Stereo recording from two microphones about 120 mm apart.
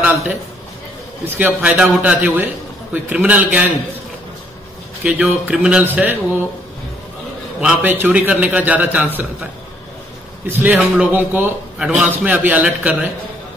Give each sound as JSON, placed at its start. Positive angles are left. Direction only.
{"t": 1.2, "sound": "a man's voice", "side_deg": -15}
{"t": 5.2, "sound": "a man's voice", "side_deg": -10}
{"t": 7.6, "sound": "a man's voice", "side_deg": -15}
{"t": 10.5, "sound": "a man's voice", "side_deg": -15}